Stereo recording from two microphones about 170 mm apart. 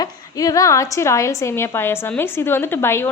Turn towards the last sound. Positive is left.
turn(degrees=15)  # may be behind; listen again after turning